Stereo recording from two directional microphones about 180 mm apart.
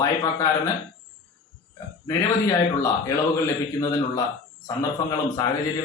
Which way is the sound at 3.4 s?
20° left (ahead or behind).